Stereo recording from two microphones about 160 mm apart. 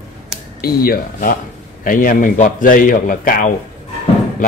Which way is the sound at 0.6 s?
70° left (ahead or behind).